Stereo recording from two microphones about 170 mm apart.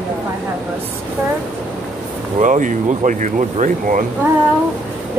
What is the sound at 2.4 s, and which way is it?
Speech, 50° right (ahead or behind).